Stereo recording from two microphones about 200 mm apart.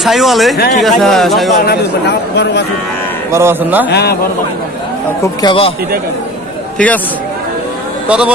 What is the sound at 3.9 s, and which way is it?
Speech, 55° left (ahead or behind).